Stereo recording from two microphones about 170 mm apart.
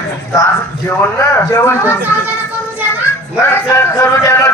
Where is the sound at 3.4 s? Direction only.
15° left (ahead or behind).